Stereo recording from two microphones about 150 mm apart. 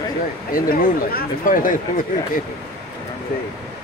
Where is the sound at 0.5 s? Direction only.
70° left (ahead or behind).